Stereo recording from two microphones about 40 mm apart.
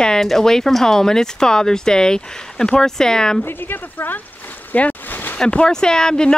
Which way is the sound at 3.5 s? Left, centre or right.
Left.